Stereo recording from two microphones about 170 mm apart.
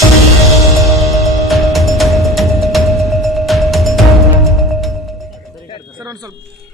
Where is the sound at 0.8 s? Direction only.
Centre (ahead or behind).